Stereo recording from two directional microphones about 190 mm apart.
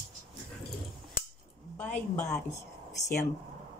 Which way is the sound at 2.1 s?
15° left (ahead or behind).